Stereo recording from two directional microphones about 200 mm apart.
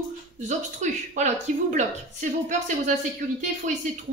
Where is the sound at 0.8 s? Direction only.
35° right (ahead or behind).